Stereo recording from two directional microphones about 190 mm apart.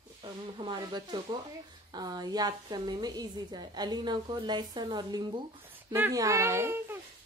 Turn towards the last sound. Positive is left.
turn(degrees=-15)  # may be behind; listen again after turning